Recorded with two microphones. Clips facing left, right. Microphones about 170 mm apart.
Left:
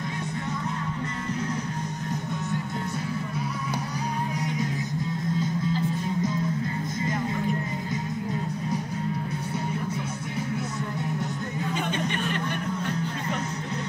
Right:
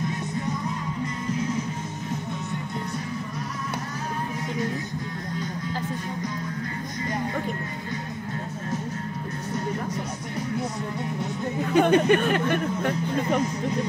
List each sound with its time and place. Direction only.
11.7 s music: 65° right (ahead or behind)